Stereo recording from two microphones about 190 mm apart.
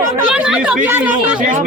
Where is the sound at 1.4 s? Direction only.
45° right (ahead or behind).